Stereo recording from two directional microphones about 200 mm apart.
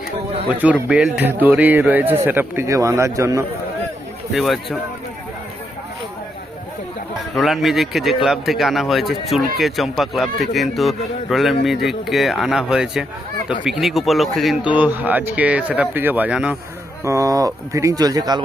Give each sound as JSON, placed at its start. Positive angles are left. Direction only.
{"t": 0.6, "sound": "a man's voice", "side_deg": -5}
{"t": 4.3, "sound": "speech", "side_deg": 0}
{"t": 7.3, "sound": "a man's voice", "side_deg": 0}